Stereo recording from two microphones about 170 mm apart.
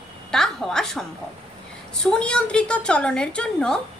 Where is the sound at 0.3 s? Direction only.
5° left (ahead or behind).